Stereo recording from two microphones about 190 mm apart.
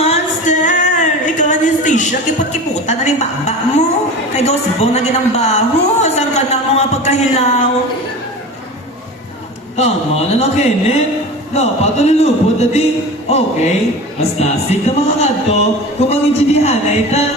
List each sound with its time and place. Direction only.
0.0 s singing: 35° left (ahead or behind)
1.2 s a woman's voice: 40° left (ahead or behind)
9.7 s a woman's voice: 35° left (ahead or behind)